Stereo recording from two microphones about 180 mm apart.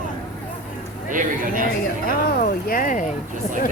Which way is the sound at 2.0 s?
50° left (ahead or behind).